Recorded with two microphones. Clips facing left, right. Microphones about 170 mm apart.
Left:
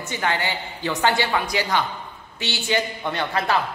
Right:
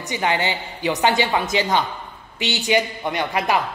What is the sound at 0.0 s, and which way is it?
A woman's voice, 15° right (ahead or behind).